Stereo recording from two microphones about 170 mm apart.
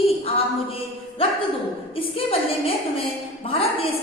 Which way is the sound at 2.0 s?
35° left (ahead or behind).